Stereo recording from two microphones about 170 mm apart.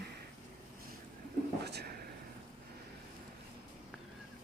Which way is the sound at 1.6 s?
75° right (ahead or behind).